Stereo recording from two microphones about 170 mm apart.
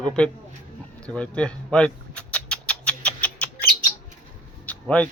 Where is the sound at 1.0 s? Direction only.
5° left (ahead or behind).